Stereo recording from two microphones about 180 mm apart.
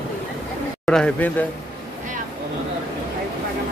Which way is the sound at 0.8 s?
5° left (ahead or behind).